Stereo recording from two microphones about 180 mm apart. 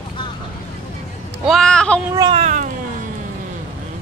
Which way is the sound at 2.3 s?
40° right (ahead or behind).